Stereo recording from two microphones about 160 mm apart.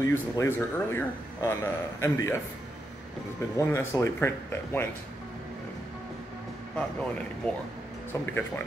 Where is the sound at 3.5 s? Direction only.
15° left (ahead or behind).